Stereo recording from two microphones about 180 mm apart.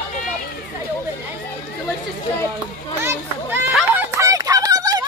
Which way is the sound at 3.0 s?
10° right (ahead or behind).